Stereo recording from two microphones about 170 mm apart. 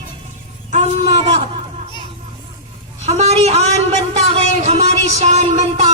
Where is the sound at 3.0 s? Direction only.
40° right (ahead or behind).